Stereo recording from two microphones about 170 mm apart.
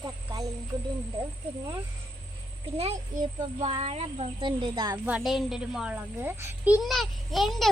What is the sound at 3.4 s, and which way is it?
Speech, 30° right (ahead or behind).